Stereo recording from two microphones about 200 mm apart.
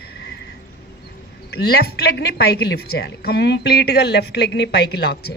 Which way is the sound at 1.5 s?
55° left (ahead or behind).